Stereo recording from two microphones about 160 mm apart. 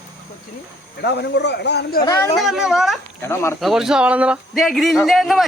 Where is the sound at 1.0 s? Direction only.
90° left.